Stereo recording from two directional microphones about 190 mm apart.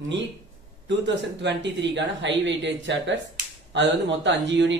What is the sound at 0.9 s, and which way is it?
Speech, 65° right (ahead or behind).